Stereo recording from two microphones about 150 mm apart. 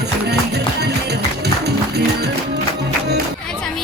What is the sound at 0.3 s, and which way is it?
Music, 90° right.